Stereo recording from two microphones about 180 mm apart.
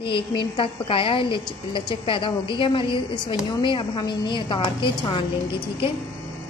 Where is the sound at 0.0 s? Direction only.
30° left (ahead or behind).